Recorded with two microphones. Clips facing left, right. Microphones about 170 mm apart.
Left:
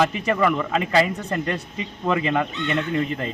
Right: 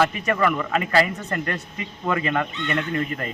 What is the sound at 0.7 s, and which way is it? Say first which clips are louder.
A man's voice: left 1 dB; 20° left (ahead or behind).